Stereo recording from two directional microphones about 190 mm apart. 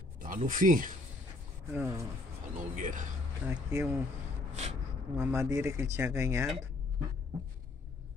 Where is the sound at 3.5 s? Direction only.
15° right (ahead or behind).